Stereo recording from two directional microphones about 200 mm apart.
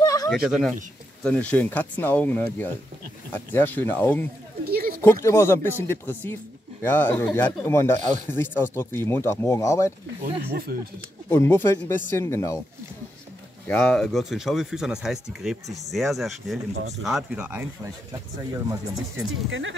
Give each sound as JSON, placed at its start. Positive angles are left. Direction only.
{"t": 0.0, "sound": "a sound", "side_deg": 20}
{"t": 0.3, "sound": "speech", "side_deg": 0}
{"t": 4.6, "sound": "a sound", "side_deg": -50}
{"t": 5.0, "sound": "speech", "side_deg": 15}
{"t": 10.2, "sound": "speech", "side_deg": -50}
{"t": 11.2, "sound": "speech", "side_deg": 10}
{"t": 13.7, "sound": "speech", "side_deg": 5}
{"t": 18.9, "sound": "speech", "side_deg": -80}